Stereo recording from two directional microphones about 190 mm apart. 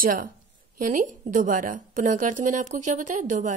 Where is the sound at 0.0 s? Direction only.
45° right (ahead or behind).